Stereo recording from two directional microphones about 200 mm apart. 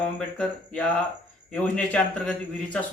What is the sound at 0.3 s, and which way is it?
Speech, 5° left (ahead or behind).